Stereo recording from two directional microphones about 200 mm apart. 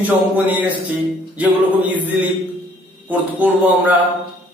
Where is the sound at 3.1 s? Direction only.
10° right (ahead or behind).